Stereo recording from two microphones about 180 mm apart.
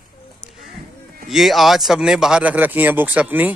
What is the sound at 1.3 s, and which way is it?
Speech, centre (ahead or behind).